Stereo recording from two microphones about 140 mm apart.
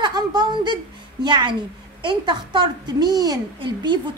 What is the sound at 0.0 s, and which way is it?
A woman's voice, 30° right (ahead or behind).